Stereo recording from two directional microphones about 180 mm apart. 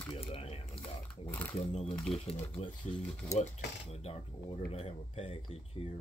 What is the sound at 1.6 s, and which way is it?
Speech, 35° left (ahead or behind).